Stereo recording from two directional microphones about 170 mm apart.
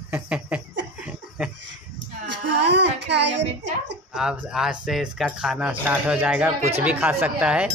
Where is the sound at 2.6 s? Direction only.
90° right.